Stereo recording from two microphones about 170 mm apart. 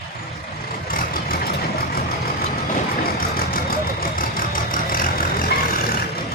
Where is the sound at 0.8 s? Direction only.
60° left (ahead or behind).